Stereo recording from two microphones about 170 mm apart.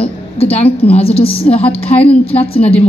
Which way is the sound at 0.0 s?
35° left (ahead or behind).